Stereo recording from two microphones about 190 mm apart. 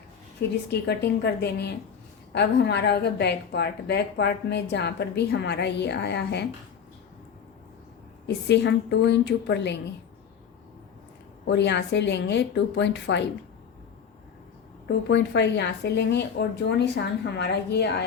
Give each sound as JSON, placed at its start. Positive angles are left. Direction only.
{"t": 0.7, "sound": "a woman's voice", "side_deg": 60}
{"t": 8.4, "sound": "a woman's voice", "side_deg": 65}
{"t": 11.4, "sound": "a woman's voice", "side_deg": 65}
{"t": 14.8, "sound": "a woman's voice", "side_deg": 65}